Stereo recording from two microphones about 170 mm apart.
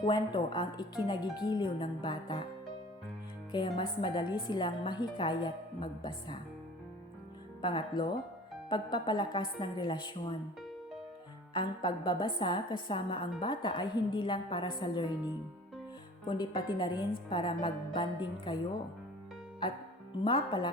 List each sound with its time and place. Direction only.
0.0 s a woman's voice: 25° left (ahead or behind)
3.7 s a woman's voice: 30° left (ahead or behind)
7.6 s a woman's voice: 30° left (ahead or behind)
11.5 s a woman's voice: 25° left (ahead or behind)
16.2 s a woman's voice: 25° left (ahead or behind)
20.2 s a woman's voice: 30° left (ahead or behind)